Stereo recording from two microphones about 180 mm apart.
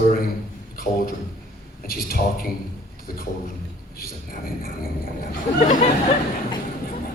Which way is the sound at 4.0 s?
55° left (ahead or behind).